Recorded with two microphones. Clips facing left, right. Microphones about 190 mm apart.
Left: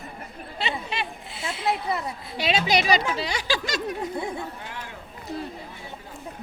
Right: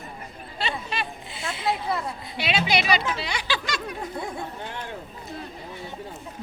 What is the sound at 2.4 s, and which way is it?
Speech, 40° left (ahead or behind).